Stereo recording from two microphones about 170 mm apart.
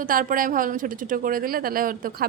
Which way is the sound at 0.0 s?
55° right (ahead or behind).